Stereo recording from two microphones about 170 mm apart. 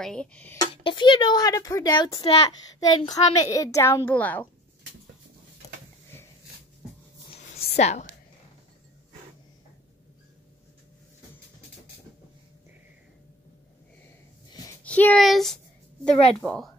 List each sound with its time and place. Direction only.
0.0 s a woman's voice: 5° left (ahead or behind)
0.8 s a woman's voice: 30° left (ahead or behind); by 4.5 s 10° left (ahead or behind)
7.2 s a sound: 35° left (ahead or behind)
14.8 s a child's voice: 10° left (ahead or behind)
15.2 s a sound: centre (ahead or behind)
16.3 s a woman's voice: 5° left (ahead or behind)